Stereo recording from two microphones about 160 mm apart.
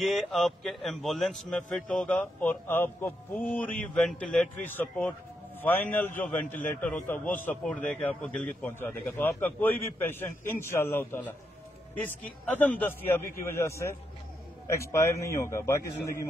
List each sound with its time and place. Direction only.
0.0 s a man's voice: centre (ahead or behind); by 15.8 s 15° left (ahead or behind)